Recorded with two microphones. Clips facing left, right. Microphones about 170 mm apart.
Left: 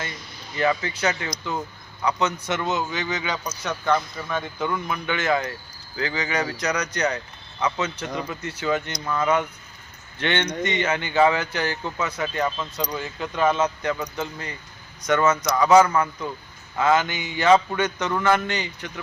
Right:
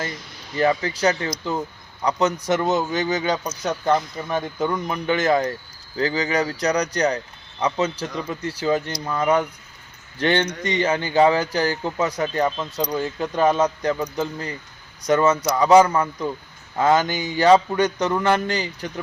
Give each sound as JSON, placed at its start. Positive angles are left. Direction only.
{"t": 0.5, "sound": "a man's voice", "side_deg": -35}